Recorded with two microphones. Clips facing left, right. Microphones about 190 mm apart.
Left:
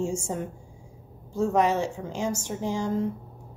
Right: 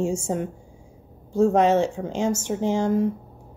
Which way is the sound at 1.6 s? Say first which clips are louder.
Right 5 dB; 20° right (ahead or behind).